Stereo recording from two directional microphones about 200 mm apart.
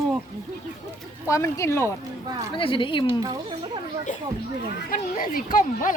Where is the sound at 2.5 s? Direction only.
25° left (ahead or behind).